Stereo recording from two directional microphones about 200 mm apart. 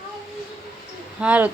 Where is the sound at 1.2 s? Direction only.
5° right (ahead or behind).